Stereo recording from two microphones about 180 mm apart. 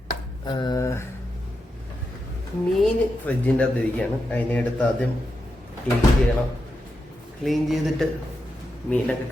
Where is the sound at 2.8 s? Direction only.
5° left (ahead or behind).